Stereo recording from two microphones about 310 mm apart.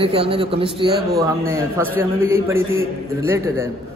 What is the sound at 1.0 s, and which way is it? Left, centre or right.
Speech, right.